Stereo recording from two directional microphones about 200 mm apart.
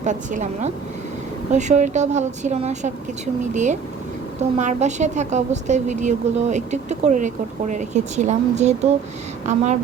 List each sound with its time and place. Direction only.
0.0 s a woman's voice: 40° right (ahead or behind)